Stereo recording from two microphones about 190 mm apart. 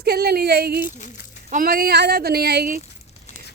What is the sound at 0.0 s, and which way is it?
Speech, 55° right (ahead or behind).